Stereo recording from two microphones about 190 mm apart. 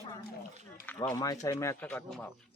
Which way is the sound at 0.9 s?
15° left (ahead or behind).